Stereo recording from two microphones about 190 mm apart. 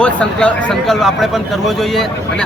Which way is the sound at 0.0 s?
5° left (ahead or behind).